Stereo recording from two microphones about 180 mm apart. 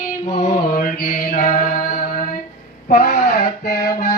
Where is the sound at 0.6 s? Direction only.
55° left (ahead or behind).